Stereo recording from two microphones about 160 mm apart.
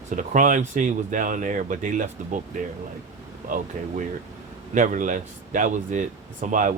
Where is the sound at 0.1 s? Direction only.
55° right (ahead or behind).